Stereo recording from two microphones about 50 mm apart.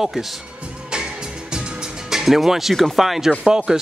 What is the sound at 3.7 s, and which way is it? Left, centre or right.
Speech, centre.